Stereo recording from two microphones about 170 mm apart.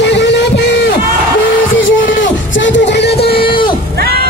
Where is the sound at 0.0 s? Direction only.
90° left.